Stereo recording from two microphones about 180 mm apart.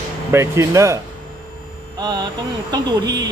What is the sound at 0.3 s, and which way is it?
Speech, 15° right (ahead or behind).